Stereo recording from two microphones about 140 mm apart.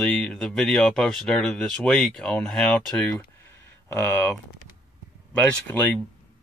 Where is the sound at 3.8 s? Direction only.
15° left (ahead or behind).